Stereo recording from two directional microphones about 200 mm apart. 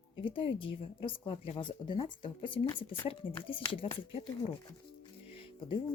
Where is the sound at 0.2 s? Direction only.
25° left (ahead or behind).